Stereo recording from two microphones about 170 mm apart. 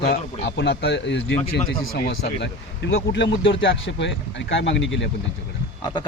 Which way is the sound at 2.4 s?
90° left.